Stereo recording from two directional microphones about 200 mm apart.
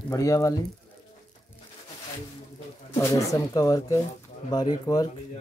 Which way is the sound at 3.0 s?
15° left (ahead or behind).